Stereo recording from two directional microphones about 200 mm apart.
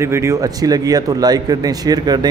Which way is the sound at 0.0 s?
15° right (ahead or behind).